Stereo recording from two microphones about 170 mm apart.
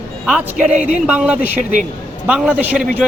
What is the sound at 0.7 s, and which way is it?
Speech, 45° right (ahead or behind).